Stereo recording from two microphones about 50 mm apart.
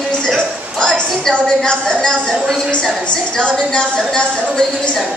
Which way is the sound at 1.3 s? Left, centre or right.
Centre.